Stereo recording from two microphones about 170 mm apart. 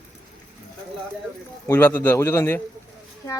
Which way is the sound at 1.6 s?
15° left (ahead or behind).